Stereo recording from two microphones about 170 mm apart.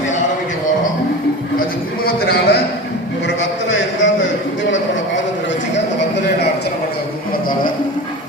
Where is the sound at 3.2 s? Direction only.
90° left.